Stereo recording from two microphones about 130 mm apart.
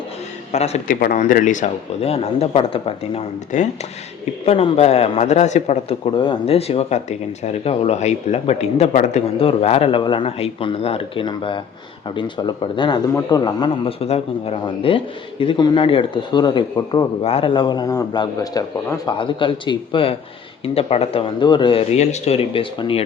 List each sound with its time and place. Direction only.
0.5 s speech: 55° left (ahead or behind)
0.9 s speech: 90° left; by 3.2 s 50° left (ahead or behind)
3.5 s speech: 65° left (ahead or behind)
4.4 s a man's voice: 50° left (ahead or behind)
6.1 s speech: 45° left (ahead or behind); by 9.2 s 65° left (ahead or behind)
9.4 s speech: 50° left (ahead or behind)
10.0 s speech: 40° left (ahead or behind)
13.8 s speech: 50° left (ahead or behind); by 17.1 s 30° left (ahead or behind)
17.2 s speech: 45° left (ahead or behind)
20.7 s speech: 50° left (ahead or behind)
21.9 s speech: 60° left (ahead or behind); by 23.0 s 45° left (ahead or behind)